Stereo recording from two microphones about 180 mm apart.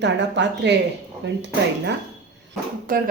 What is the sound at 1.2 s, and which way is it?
Speech, 90° right.